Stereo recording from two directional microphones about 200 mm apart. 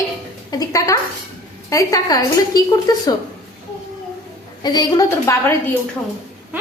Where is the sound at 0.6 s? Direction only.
15° left (ahead or behind).